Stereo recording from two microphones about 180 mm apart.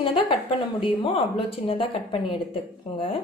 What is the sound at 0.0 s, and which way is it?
A woman's voice, 30° left (ahead or behind).